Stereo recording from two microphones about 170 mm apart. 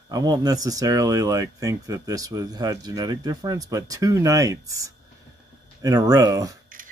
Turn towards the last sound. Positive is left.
turn(degrees=-20)  # may be behind; listen again after turning